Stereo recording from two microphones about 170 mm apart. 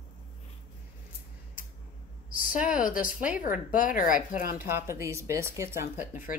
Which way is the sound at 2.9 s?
55° left (ahead or behind).